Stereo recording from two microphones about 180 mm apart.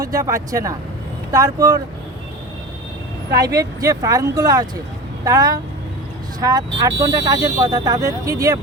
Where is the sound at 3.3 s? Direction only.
20° right (ahead or behind).